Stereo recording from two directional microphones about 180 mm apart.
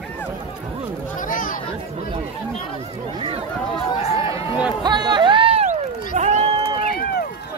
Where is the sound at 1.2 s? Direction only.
50° left (ahead or behind).